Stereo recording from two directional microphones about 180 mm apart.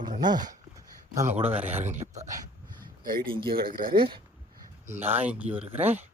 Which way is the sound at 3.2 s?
30° right (ahead or behind).